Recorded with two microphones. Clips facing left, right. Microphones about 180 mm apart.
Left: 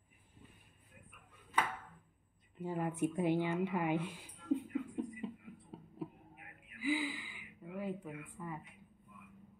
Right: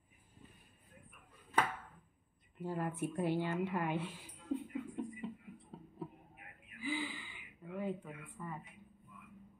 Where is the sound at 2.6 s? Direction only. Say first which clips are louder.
Left 3 dB; 15° left (ahead or behind).